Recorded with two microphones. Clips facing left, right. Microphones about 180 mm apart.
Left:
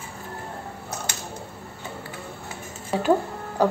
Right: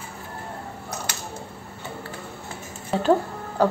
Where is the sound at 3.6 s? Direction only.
15° left (ahead or behind).